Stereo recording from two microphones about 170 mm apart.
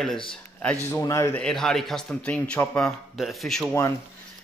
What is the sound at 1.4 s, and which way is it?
Speech, centre (ahead or behind).